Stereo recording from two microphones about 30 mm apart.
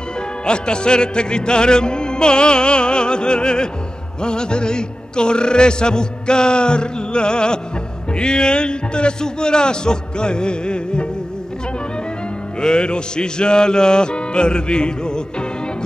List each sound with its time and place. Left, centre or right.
0.5 s music: left
8.1 s a man's voice: left
12.5 s music: left